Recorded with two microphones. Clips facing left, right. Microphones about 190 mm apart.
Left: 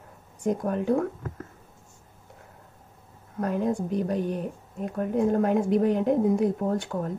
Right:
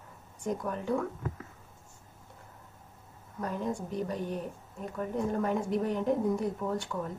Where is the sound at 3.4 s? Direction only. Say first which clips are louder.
Left 7 dB; 65° left (ahead or behind).